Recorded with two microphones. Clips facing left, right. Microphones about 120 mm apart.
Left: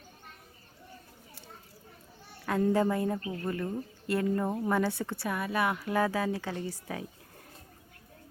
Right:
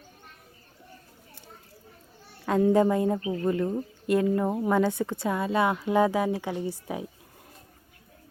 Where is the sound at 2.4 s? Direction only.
10° right (ahead or behind).